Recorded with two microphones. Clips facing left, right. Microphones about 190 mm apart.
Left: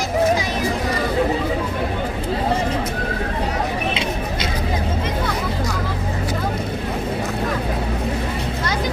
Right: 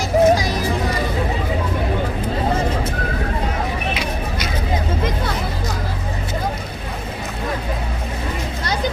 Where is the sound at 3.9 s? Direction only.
25° left (ahead or behind).